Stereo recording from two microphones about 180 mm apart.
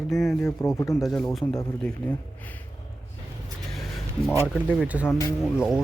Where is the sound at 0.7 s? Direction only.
15° left (ahead or behind).